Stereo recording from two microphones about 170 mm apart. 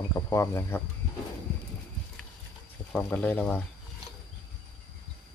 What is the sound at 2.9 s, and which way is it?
Speech, 10° left (ahead or behind).